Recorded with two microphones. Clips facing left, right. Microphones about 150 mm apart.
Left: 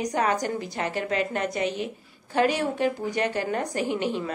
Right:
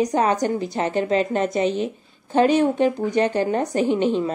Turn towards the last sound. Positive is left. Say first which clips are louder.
# right 7 dB
turn(degrees=-25)  # may be behind; listen again after turning